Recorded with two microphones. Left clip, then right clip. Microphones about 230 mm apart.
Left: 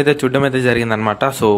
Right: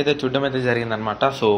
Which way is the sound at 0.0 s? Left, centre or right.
Left.